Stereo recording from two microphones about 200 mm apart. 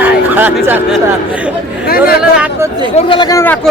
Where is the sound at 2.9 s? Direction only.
25° left (ahead or behind); by 3.7 s 10° left (ahead or behind).